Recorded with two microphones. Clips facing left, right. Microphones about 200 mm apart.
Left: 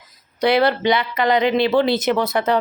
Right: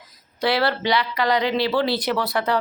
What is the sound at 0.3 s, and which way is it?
Speech, 20° left (ahead or behind).